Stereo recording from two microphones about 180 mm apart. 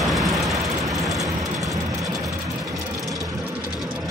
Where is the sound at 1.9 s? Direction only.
20° right (ahead or behind).